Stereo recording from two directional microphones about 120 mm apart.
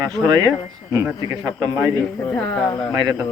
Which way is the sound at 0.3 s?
35° right (ahead or behind).